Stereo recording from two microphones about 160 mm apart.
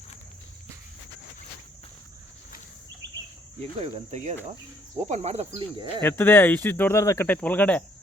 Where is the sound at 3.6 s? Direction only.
40° right (ahead or behind).